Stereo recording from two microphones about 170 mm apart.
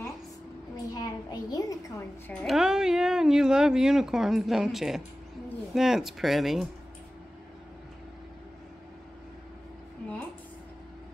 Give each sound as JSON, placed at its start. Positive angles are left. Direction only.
{"t": 0.9, "sound": "a woman's voice", "side_deg": 25}
{"t": 2.4, "sound": "speech", "side_deg": 0}